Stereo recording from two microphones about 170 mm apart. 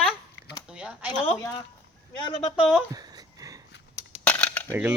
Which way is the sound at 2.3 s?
35° left (ahead or behind).